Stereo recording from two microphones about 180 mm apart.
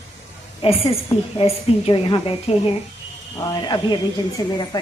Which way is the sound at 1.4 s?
30° left (ahead or behind).